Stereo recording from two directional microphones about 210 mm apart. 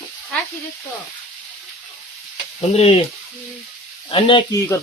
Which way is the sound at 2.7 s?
30° left (ahead or behind).